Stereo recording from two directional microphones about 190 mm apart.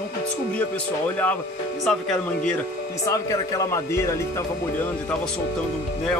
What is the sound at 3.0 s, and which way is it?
Speech, 20° left (ahead or behind).